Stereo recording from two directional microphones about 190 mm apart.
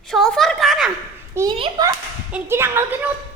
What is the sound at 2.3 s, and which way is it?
Speech, 10° right (ahead or behind).